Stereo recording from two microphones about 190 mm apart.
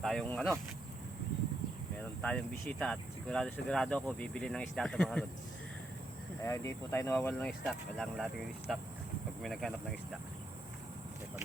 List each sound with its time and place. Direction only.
0.0 s speech: 5° left (ahead or behind)
2.0 s speech: 5° left (ahead or behind)
6.4 s speech: 15° left (ahead or behind); by 10.2 s centre (ahead or behind)